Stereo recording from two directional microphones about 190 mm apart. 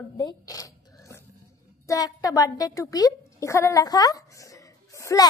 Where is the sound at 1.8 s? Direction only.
20° left (ahead or behind).